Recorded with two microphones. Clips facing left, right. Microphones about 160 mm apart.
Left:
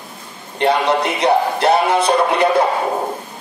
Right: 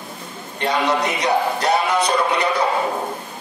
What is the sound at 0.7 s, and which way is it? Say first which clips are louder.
Speech: left 4 dB; 30° left (ahead or behind).